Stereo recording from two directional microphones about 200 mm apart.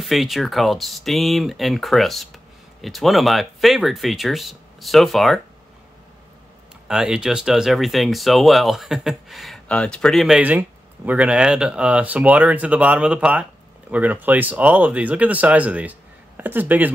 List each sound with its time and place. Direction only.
0.0 s speech: centre (ahead or behind)
6.9 s speech: 5° right (ahead or behind)